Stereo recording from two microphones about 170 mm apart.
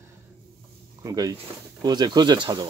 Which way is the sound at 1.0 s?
20° right (ahead or behind).